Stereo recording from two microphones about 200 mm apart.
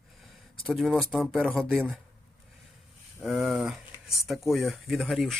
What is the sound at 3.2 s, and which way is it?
Speech, centre (ahead or behind).